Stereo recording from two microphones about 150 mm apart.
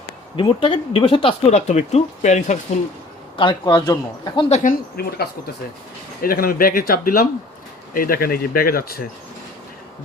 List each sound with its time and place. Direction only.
0.3 s speech: 35° left (ahead or behind); by 2.6 s 50° left (ahead or behind)
3.3 s speech: 30° left (ahead or behind)
4.4 s speech: 50° left (ahead or behind)
4.7 s speech: 90° left
6.2 s speech: 75° left (ahead or behind)